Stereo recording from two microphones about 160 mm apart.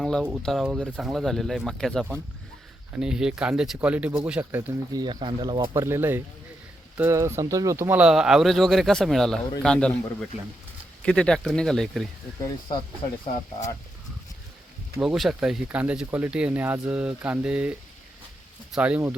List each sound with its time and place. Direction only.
0.0 s speech: 5° left (ahead or behind)
4.9 s speech: 25° right (ahead or behind)
5.7 s speech: 15° right (ahead or behind); by 12.0 s 5° left (ahead or behind)
15.0 s speech: centre (ahead or behind)